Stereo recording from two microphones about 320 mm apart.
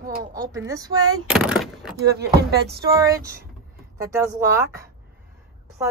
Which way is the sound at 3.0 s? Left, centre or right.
Centre.